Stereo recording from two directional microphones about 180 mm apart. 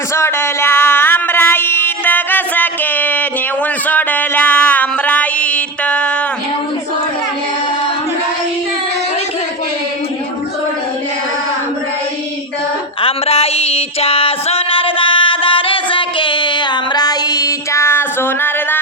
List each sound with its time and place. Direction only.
0.1 s a sound: 15° left (ahead or behind)
3.8 s music: 10° left (ahead or behind)
13.0 s music: 30° left (ahead or behind); by 18.8 s 10° left (ahead or behind)